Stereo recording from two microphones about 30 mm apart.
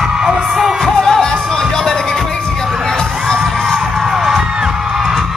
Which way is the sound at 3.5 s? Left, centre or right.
Centre.